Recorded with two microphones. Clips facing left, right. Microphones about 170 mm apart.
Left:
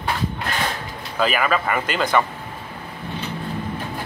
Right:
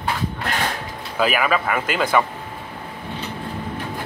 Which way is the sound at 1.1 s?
5° right (ahead or behind).